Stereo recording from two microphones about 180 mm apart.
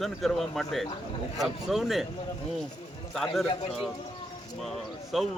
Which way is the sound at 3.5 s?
35° left (ahead or behind).